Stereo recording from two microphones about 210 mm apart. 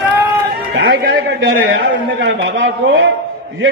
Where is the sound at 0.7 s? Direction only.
55° right (ahead or behind).